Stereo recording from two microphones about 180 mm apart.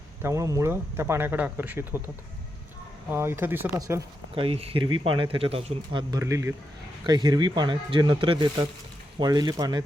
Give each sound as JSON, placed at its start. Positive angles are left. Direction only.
{"t": 0.2, "sound": "speech", "side_deg": -15}
{"t": 3.1, "sound": "speech", "side_deg": -15}
{"t": 4.4, "sound": "speech", "side_deg": -35}